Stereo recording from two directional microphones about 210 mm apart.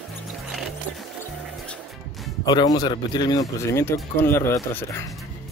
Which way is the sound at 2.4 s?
20° left (ahead or behind).